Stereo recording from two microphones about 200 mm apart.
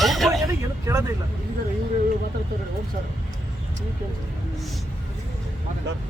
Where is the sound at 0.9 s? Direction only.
15° right (ahead or behind).